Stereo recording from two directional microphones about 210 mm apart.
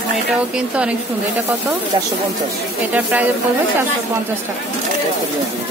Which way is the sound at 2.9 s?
5° right (ahead or behind).